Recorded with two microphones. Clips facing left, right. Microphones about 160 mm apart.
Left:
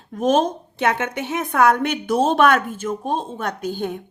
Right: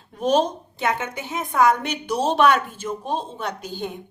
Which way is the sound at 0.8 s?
65° left (ahead or behind).